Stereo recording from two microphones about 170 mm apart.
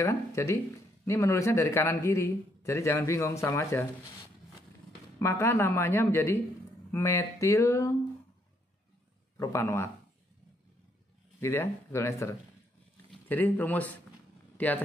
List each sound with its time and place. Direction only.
0.0 s a man's voice: 15° left (ahead or behind)
5.2 s a man's voice: 15° left (ahead or behind)
9.4 s a man's voice: 15° left (ahead or behind)
11.3 s a man's voice: 15° left (ahead or behind)